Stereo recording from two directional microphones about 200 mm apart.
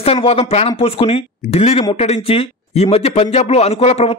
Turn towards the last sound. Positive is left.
turn(degrees=30)  # may be behind; listen again after turning